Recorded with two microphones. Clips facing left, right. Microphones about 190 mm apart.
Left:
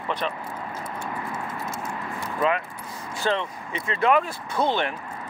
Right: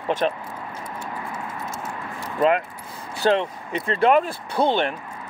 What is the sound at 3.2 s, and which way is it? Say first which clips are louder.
Speech: right 6 dB; 40° right (ahead or behind).